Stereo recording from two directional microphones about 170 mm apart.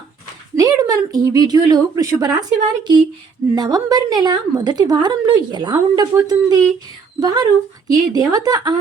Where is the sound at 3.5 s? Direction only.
25° right (ahead or behind).